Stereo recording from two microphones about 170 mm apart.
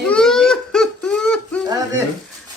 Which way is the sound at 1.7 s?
20° right (ahead or behind).